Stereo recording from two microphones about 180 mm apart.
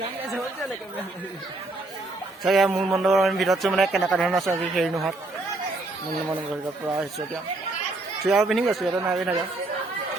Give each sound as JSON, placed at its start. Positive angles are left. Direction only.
{"t": 2.4, "sound": "a man's voice", "side_deg": 0}
{"t": 8.2, "sound": "a man's voice", "side_deg": 0}